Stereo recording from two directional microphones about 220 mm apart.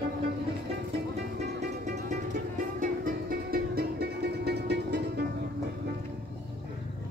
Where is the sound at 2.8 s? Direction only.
45° right (ahead or behind).